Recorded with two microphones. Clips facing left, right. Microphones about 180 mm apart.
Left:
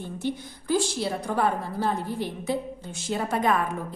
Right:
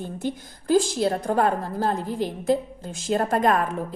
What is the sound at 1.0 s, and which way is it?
Speech, 55° right (ahead or behind).